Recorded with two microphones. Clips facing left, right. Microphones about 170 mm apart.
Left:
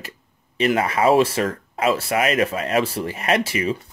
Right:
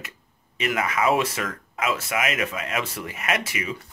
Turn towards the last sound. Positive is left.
turn(degrees=30)  # may be behind; listen again after turning